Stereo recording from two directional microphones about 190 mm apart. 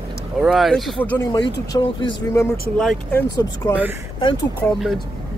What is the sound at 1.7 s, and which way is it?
Speech, 25° left (ahead or behind).